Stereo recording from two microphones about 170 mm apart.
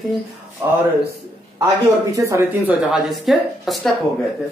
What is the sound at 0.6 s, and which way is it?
Speech, 10° right (ahead or behind).